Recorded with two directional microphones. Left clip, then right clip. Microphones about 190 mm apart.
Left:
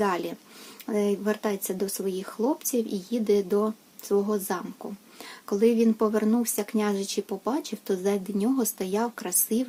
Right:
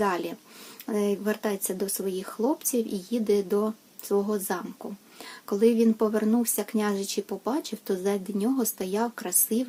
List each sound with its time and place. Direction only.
0.0 s speech: centre (ahead or behind)